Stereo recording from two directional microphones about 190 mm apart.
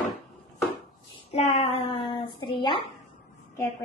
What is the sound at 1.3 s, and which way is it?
Speech, 35° left (ahead or behind).